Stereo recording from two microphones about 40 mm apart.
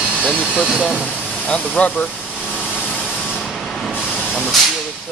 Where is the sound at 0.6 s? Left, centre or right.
Right.